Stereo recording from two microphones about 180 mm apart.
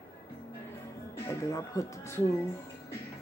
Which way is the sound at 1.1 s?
15° left (ahead or behind).